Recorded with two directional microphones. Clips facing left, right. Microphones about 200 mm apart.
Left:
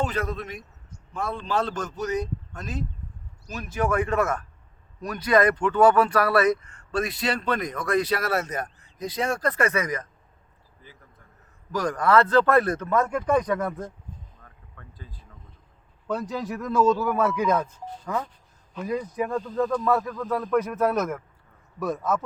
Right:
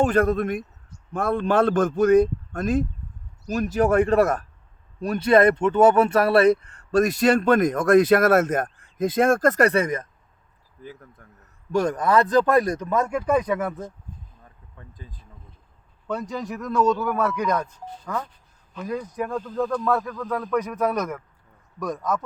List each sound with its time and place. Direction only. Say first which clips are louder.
0.0 s a man's voice: right 9 dB; 50° right (ahead or behind); by 10.1 s 25° right (ahead or behind)
11.7 s speech: right 1 dB; 25° right (ahead or behind); by 13.9 s 5° right (ahead or behind)
14.4 s a sound: right 2 dB; 15° right (ahead or behind)
16.0 s speech: even; centre (ahead or behind)